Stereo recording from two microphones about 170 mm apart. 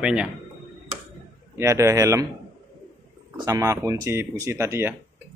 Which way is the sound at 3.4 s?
20° right (ahead or behind).